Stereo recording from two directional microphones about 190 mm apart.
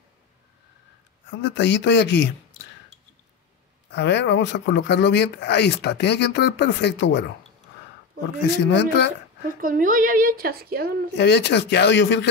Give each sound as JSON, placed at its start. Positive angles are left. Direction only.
{"t": 1.3, "sound": "speech", "side_deg": 70}
{"t": 3.9, "sound": "speech", "side_deg": 65}
{"t": 8.4, "sound": "speech", "side_deg": 65}
{"t": 9.6, "sound": "a woman's voice", "side_deg": -45}
{"t": 11.1, "sound": "speech", "side_deg": 65}